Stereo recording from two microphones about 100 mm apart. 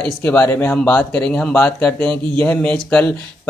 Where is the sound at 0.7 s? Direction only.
15° left (ahead or behind).